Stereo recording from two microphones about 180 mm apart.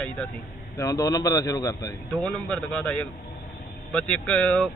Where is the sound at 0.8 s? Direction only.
20° left (ahead or behind).